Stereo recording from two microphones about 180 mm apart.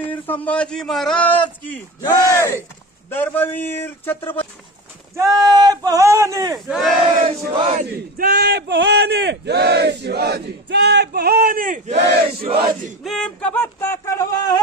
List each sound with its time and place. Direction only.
0.1 s a man's voice: 10° left (ahead or behind)
5.1 s speech: 20° right (ahead or behind)
6.5 s battle cry: centre (ahead or behind)
7.2 s battle cry: 30° right (ahead or behind)
7.7 s speech: 55° right (ahead or behind)
12.4 s battle cry: 30° right (ahead or behind)
13.0 s a man's voice: centre (ahead or behind); by 14.6 s 20° left (ahead or behind)